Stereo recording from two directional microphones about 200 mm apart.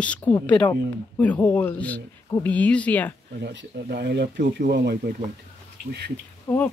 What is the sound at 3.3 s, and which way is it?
Speech, 55° right (ahead or behind).